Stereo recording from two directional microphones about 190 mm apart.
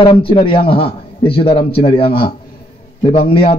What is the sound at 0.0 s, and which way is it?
A man's voice, 30° left (ahead or behind).